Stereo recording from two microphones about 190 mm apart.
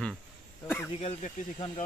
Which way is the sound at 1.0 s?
35° left (ahead or behind).